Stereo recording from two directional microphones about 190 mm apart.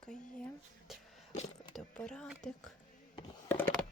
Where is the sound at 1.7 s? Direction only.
5° left (ahead or behind).